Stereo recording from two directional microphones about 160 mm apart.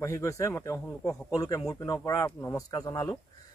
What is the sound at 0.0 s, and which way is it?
Speech, 15° left (ahead or behind).